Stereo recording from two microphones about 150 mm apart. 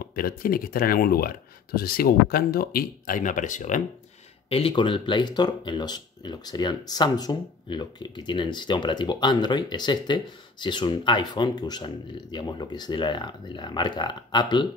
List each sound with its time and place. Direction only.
0.0 s speech: 80° left; by 3.8 s 55° left (ahead or behind)
4.5 s speech: 40° left (ahead or behind)